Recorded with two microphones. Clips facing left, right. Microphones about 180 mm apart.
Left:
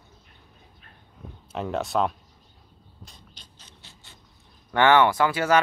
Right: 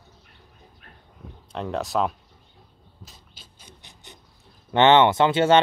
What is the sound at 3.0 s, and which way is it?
Mechanisms, 5° right (ahead or behind).